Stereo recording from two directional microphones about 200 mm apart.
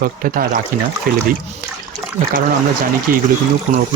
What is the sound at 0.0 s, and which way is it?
Speech, 45° right (ahead or behind).